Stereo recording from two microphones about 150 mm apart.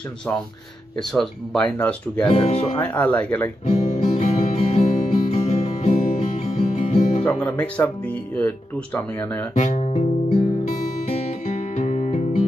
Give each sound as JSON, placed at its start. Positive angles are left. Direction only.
{"t": 1.1, "sound": "speech", "side_deg": 0}
{"t": 2.2, "sound": "speech", "side_deg": 40}
{"t": 2.8, "sound": "speech", "side_deg": 10}
{"t": 3.6, "sound": "music", "side_deg": 50}
{"t": 7.2, "sound": "speech", "side_deg": 10}
{"t": 9.6, "sound": "guitar", "side_deg": 50}
{"t": 11.1, "sound": "music", "side_deg": 50}